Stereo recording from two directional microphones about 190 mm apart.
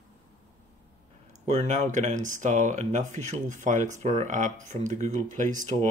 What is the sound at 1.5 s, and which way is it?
Speech, 35° right (ahead or behind).